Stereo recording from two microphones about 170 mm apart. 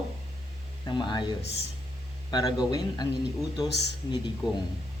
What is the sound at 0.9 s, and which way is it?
Speech, 25° left (ahead or behind).